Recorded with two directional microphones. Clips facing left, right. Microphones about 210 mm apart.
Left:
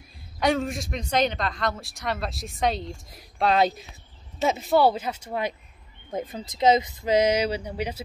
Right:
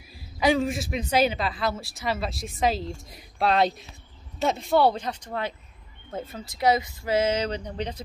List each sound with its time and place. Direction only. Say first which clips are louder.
0.4 s a woman's voice: right 2 dB; centre (ahead or behind)